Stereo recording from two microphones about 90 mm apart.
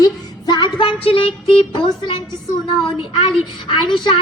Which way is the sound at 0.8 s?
85° left.